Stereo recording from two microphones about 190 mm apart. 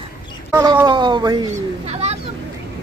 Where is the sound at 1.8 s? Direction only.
35° right (ahead or behind).